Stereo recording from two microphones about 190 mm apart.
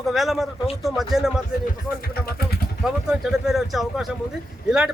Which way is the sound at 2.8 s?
Centre (ahead or behind).